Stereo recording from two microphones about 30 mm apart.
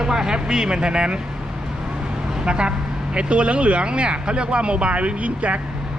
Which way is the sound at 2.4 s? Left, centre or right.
Right.